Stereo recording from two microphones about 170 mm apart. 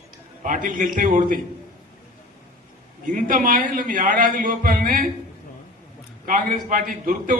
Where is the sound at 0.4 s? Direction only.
50° right (ahead or behind).